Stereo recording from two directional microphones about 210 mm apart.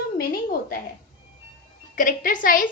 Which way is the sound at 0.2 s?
45° left (ahead or behind).